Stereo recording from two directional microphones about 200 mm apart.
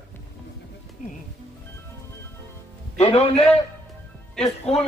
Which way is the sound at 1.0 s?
40° left (ahead or behind).